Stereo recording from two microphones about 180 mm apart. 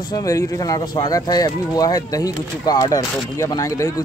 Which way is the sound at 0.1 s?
20° left (ahead or behind).